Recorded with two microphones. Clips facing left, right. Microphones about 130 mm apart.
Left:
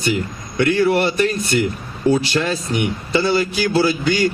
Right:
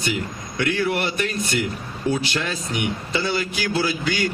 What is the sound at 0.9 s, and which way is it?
Speech, 35° left (ahead or behind).